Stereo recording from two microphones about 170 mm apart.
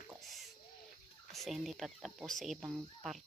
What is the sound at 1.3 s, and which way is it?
Speech, centre (ahead or behind).